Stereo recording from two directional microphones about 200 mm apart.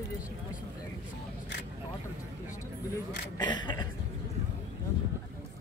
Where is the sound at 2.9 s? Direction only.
20° left (ahead or behind).